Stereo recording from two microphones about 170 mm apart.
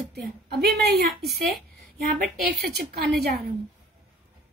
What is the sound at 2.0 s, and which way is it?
Speech, 70° right (ahead or behind).